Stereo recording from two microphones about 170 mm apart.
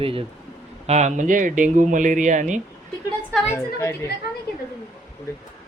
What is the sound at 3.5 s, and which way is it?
Speech, 15° left (ahead or behind).